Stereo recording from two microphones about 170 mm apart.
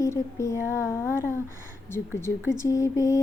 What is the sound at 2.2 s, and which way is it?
Speech, 15° left (ahead or behind).